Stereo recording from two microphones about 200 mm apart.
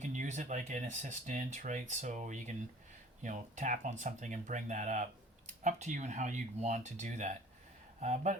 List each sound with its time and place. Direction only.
0.0 s speech: 35° right (ahead or behind)